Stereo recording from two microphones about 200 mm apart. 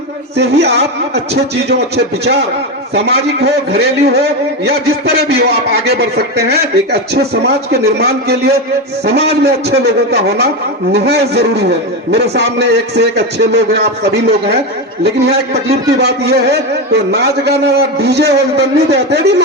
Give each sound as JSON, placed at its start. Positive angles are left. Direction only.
{"t": 0.3, "sound": "a man's voice", "side_deg": -55}
{"t": 2.9, "sound": "a man's voice", "side_deg": -55}